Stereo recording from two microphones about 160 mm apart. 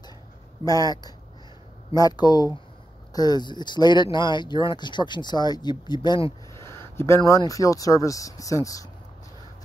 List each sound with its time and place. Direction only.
0.7 s speech: 25° left (ahead or behind)
6.5 s a sound: 15° left (ahead or behind)
7.2 s speech: 20° left (ahead or behind)